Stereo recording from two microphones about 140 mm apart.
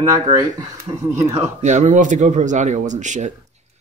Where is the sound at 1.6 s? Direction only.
60° right (ahead or behind).